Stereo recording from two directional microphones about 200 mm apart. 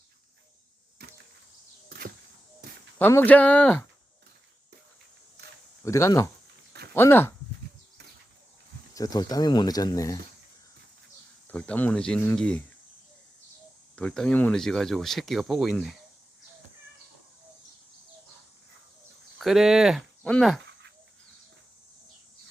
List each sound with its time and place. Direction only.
3.0 s speech: 10° left (ahead or behind)
5.8 s speech: 15° left (ahead or behind)
9.0 s speech: 20° left (ahead or behind)
11.4 s speech: 5° left (ahead or behind)
13.9 s speech: 5° left (ahead or behind)
19.4 s speech: centre (ahead or behind)